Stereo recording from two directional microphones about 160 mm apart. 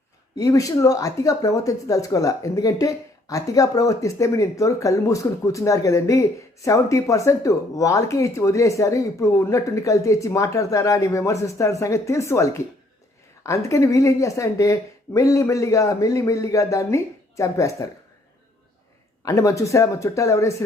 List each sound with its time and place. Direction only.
0.3 s speech: 20° left (ahead or behind)
19.2 s speech: 20° left (ahead or behind)